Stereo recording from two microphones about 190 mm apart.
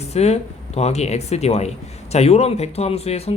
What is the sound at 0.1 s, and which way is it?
Speech, 35° left (ahead or behind).